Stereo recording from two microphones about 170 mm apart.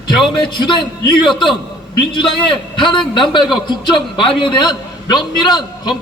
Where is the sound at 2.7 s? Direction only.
30° left (ahead or behind).